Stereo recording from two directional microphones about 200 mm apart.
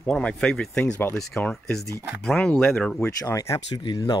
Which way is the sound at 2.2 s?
5° left (ahead or behind).